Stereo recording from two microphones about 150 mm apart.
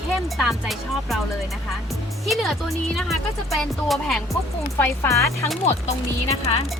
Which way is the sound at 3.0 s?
Centre (ahead or behind).